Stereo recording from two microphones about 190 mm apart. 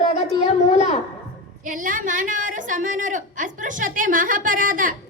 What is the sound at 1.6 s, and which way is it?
A woman's voice, 45° right (ahead or behind).